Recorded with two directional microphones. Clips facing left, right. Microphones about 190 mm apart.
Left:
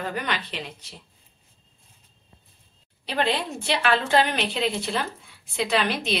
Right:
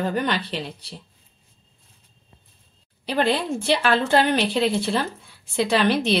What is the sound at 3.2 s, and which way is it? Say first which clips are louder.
A woman's voice: right 4 dB; 35° right (ahead or behind).